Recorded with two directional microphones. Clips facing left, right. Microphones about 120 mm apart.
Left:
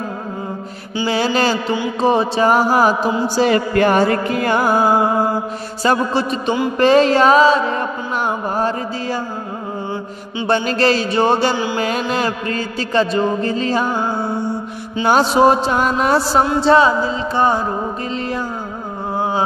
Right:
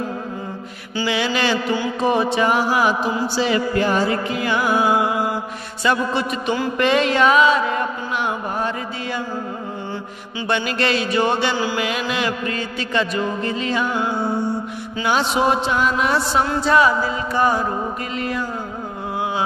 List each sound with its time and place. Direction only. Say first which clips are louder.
1.0 s mantra: left 4 dB; 40° left (ahead or behind)
3.3 s music: left 5 dB; 50° left (ahead or behind); by 6.5 s 35° left (ahead or behind)
6.8 s mantra: left 6 dB; 35° left (ahead or behind)
10.4 s mantra: left 5 dB; 35° left (ahead or behind)
11.5 s music: left 2 dB; 20° left (ahead or behind)
11.8 s mantra: left 4 dB; 40° left (ahead or behind)
16.4 s music: left 3 dB; 30° left (ahead or behind)
19.1 s music: left 4 dB; 35° left (ahead or behind)